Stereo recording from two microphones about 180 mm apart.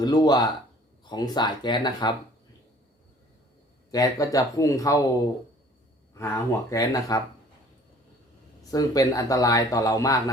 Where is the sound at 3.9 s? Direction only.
20° left (ahead or behind).